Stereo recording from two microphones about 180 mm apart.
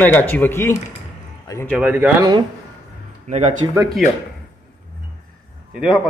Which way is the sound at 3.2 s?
40° right (ahead or behind).